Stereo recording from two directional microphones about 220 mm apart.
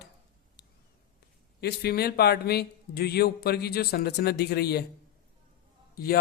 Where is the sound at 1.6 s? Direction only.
45° left (ahead or behind).